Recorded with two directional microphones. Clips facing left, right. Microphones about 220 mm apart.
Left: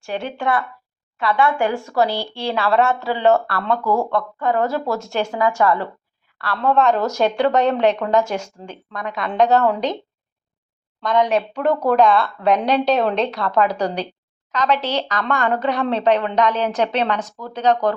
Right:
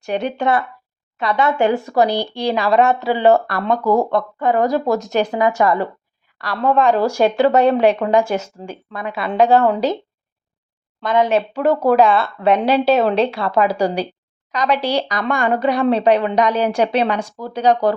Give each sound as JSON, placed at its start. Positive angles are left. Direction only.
{"t": 0.0, "sound": "a woman's voice", "side_deg": -20}
{"t": 11.0, "sound": "a woman's voice", "side_deg": -5}